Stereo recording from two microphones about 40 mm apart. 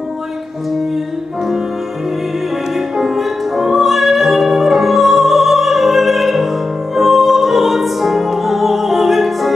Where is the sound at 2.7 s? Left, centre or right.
Centre.